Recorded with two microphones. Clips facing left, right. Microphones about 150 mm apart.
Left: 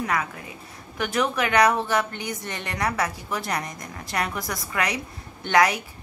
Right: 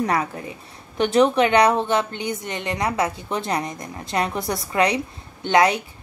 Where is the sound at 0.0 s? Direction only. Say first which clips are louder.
Right 5 dB; 35° right (ahead or behind).